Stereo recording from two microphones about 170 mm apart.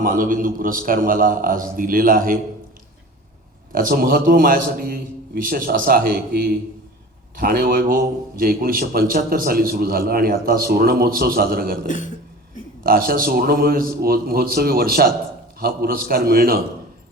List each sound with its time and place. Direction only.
0.0 s a man's voice: 55° right (ahead or behind)
3.7 s a man's voice: 55° right (ahead or behind)
11.9 s a man's voice: 50° left (ahead or behind)
12.8 s a man's voice: 55° right (ahead or behind)